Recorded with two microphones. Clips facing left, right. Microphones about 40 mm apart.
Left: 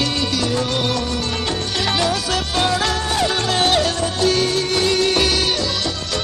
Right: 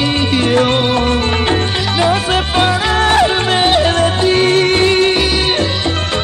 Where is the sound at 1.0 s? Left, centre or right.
Right.